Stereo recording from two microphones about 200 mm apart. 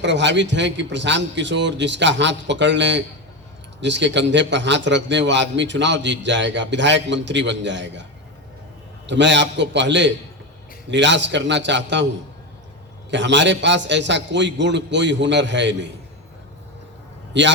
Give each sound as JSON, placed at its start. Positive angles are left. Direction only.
{"t": 0.0, "sound": "a man's voice", "side_deg": -60}
{"t": 9.0, "sound": "a man's voice", "side_deg": -60}
{"t": 13.1, "sound": "a man's voice", "side_deg": -60}
{"t": 17.3, "sound": "a man's voice", "side_deg": -65}